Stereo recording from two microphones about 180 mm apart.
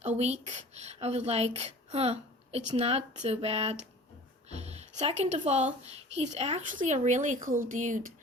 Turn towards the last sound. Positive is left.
turn(degrees=-45)  # may be behind; listen again after turning